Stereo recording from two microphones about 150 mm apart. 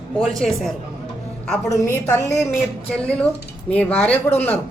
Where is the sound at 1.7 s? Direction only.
20° left (ahead or behind).